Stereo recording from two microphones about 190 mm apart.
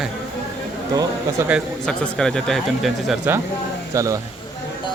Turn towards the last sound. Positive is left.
turn(degrees=-15)  # may be behind; listen again after turning